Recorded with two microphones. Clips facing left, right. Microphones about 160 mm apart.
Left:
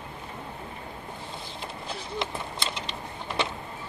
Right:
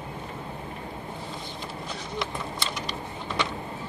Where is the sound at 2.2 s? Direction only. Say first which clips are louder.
Right 1 dB; 25° left (ahead or behind).